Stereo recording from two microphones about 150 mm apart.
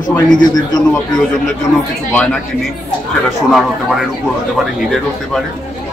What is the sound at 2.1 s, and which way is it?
Speech, 5° left (ahead or behind).